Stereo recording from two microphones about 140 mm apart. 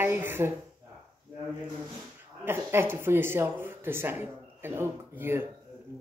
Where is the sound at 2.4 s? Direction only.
15° right (ahead or behind).